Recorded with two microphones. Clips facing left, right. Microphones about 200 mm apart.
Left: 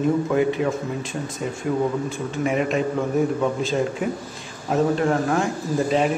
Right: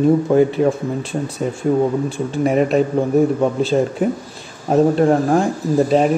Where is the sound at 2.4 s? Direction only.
40° right (ahead or behind).